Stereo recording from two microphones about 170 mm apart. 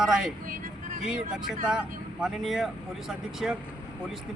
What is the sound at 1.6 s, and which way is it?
Speech, 5° right (ahead or behind).